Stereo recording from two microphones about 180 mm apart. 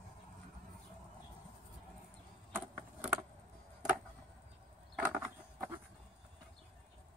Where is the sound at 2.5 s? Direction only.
5° right (ahead or behind).